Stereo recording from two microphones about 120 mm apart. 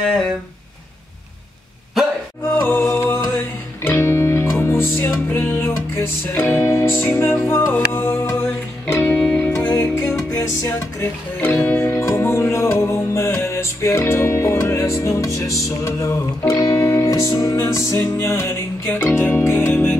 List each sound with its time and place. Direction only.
2.5 s music: 20° left (ahead or behind)
10.3 s music: 20° left (ahead or behind)